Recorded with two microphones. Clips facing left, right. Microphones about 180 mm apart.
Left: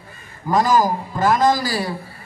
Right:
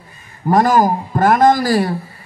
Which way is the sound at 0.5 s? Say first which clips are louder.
Right 4 dB; 55° right (ahead or behind).